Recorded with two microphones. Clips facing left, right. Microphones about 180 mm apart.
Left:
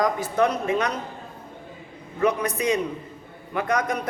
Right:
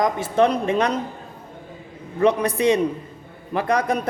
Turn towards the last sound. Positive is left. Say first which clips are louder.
# right 3 dB
turn(degrees=-30)  # may be behind; listen again after turning